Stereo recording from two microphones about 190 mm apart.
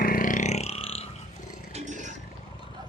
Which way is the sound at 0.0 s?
50° left (ahead or behind).